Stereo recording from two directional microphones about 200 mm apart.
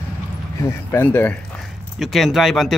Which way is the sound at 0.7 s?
10° left (ahead or behind).